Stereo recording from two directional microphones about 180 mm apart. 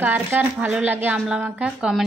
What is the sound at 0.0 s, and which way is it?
Speech, 10° right (ahead or behind).